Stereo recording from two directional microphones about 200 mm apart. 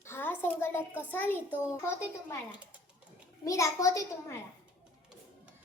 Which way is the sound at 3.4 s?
15° left (ahead or behind).